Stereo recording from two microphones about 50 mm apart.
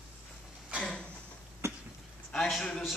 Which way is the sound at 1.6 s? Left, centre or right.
Right.